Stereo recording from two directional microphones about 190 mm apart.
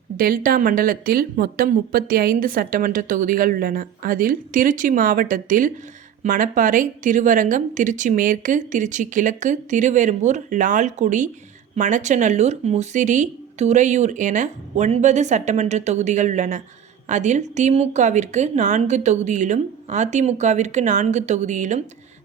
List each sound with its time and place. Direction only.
0.2 s speech: 50° right (ahead or behind)